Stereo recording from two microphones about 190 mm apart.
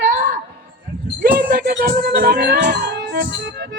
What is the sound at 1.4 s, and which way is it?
Music, 55° right (ahead or behind).